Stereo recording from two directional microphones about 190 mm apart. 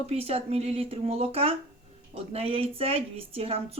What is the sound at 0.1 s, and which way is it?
Speech, 30° right (ahead or behind).